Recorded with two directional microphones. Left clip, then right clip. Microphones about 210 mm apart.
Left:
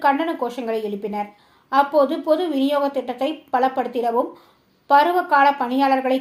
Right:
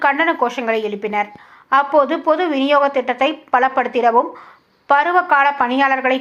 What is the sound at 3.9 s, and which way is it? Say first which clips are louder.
Speech: right 7 dB; 25° right (ahead or behind).